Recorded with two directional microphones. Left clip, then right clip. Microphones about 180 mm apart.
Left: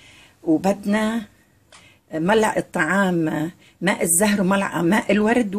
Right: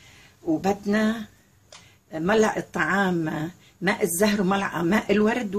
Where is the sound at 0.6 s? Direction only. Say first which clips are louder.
Left 3 dB; 45° left (ahead or behind).